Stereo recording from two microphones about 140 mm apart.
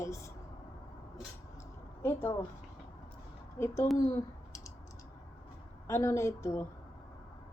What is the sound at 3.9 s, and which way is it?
Clicking, 20° left (ahead or behind).